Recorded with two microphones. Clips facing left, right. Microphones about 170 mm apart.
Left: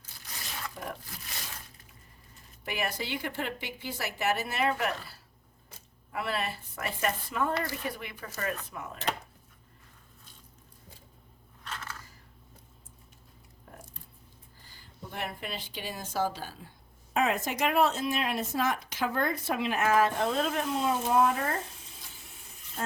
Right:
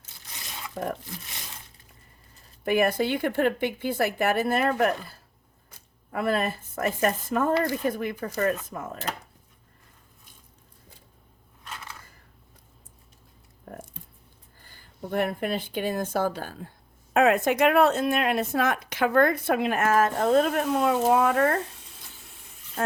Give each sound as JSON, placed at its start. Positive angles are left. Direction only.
{"t": 0.8, "sound": "speech", "side_deg": -40}
{"t": 2.6, "sound": "speech", "side_deg": -50}
{"t": 11.6, "sound": "crushing", "side_deg": -10}
{"t": 13.7, "sound": "a sound", "side_deg": -50}
{"t": 14.6, "sound": "speech", "side_deg": -55}